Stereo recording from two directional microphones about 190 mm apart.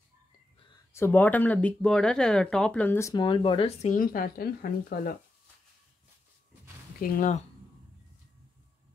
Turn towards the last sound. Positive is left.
turn(degrees=40)  # may be behind; listen again after turning